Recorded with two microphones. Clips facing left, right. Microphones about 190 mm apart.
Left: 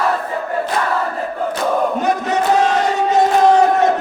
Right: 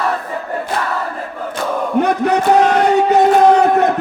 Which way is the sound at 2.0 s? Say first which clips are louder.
Right 3 dB; 60° right (ahead or behind).